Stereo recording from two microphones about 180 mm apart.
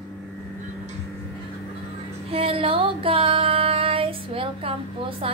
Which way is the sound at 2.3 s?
30° right (ahead or behind).